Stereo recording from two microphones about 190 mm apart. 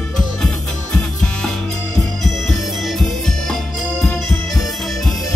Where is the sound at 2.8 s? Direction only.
Centre (ahead or behind).